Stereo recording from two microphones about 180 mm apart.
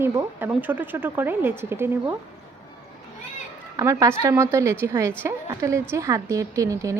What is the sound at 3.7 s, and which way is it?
A woman's voice, 15° right (ahead or behind).